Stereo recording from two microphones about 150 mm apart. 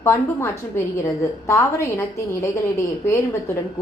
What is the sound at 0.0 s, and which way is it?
A woman's voice, 15° left (ahead or behind).